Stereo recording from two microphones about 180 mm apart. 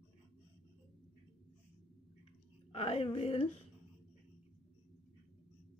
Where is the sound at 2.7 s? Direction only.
35° left (ahead or behind).